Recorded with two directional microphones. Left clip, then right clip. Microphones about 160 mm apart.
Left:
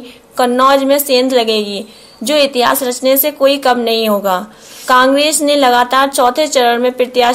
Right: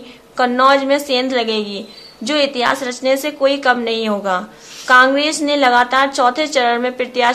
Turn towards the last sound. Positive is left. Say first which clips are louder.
# left 5 dB
turn(degrees=25)  # may be behind; listen again after turning